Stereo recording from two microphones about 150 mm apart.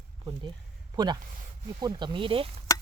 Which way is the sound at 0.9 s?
25° right (ahead or behind).